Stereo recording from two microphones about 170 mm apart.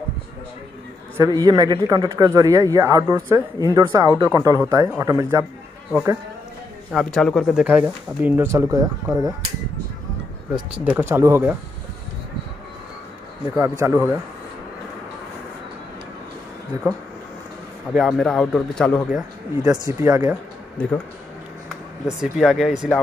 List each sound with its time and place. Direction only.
1.1 s speech: 20° right (ahead or behind)
5.4 s a sound: 5° left (ahead or behind)
6.9 s speech: centre (ahead or behind)
7.6 s speech: 10° right (ahead or behind)
10.5 s speech: 5° right (ahead or behind)
13.6 s speech: 15° right (ahead or behind)
17.9 s speech: centre (ahead or behind)
20.0 s speech: 20° right (ahead or behind)
22.0 s speech: 5° right (ahead or behind)